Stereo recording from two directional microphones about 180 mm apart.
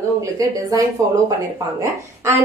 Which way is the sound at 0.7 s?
20° right (ahead or behind).